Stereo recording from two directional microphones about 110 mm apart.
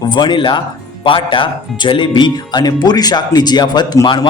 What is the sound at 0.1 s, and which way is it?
A man's voice, 45° left (ahead or behind).